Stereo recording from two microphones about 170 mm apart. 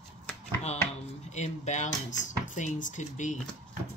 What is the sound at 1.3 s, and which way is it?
Speech, 45° left (ahead or behind).